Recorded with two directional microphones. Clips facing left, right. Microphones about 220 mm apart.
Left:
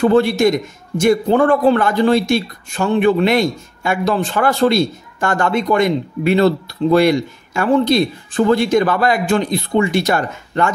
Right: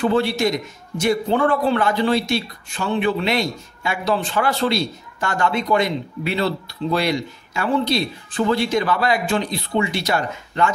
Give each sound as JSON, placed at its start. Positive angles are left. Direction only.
{"t": 0.0, "sound": "a man's voice", "side_deg": 50}